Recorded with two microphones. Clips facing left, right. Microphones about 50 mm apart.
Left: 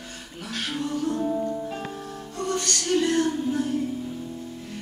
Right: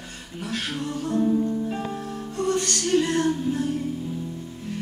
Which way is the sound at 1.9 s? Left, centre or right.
Right.